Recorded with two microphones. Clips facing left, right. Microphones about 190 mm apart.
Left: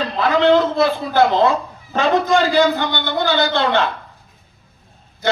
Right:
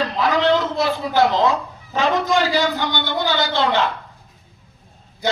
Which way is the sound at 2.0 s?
55° left (ahead or behind).